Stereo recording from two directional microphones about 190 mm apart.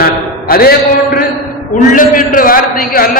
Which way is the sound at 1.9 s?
45° left (ahead or behind).